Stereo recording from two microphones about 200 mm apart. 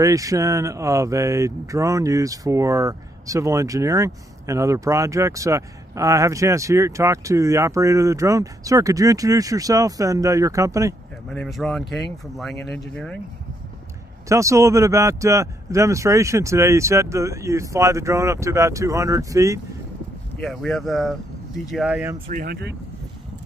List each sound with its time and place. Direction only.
0.0 s speech: 15° right (ahead or behind)
11.2 s speech: centre (ahead or behind)
14.3 s speech: 15° right (ahead or behind)
20.3 s speech: centre (ahead or behind)
22.3 s speech: 50° right (ahead or behind)